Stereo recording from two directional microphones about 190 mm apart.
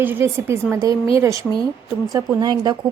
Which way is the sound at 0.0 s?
10° right (ahead or behind).